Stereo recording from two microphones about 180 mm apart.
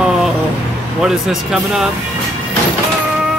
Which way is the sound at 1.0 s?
5° right (ahead or behind).